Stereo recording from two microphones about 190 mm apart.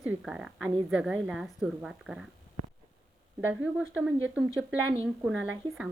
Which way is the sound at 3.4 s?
5° right (ahead or behind).